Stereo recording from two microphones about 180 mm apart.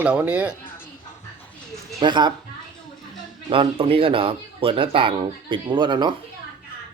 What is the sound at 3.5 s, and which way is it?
Speech, 30° right (ahead or behind).